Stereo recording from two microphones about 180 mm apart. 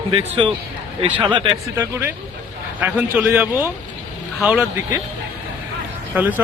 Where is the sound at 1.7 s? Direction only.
15° right (ahead or behind).